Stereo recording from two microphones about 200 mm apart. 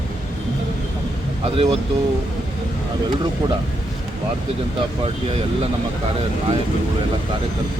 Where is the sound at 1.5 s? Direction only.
30° right (ahead or behind).